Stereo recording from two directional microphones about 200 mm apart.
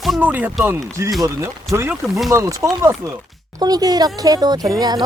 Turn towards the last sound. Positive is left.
turn(degrees=-20)  # may be behind; listen again after turning